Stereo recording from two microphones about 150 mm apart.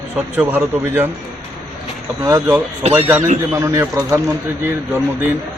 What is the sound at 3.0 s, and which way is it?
Speech, 10° right (ahead or behind).